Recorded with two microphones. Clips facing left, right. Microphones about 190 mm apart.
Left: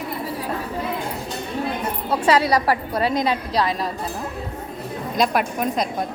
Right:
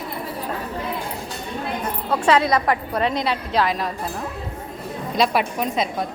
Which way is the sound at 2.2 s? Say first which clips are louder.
Even; 35° left (ahead or behind).